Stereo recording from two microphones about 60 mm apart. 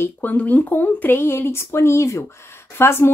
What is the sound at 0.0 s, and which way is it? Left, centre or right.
Speech, left.